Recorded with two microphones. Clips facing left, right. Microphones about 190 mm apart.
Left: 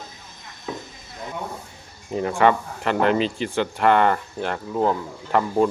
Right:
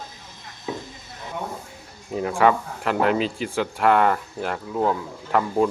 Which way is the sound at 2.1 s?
Centre (ahead or behind).